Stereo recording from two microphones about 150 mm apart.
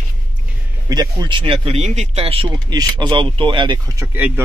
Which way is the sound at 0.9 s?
25° right (ahead or behind).